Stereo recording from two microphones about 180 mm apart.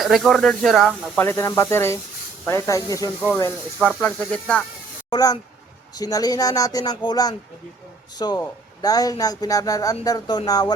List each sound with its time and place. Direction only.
0.0 s speech: centre (ahead or behind)
1.2 s speech: 15° left (ahead or behind)
5.1 s speech: 20° left (ahead or behind)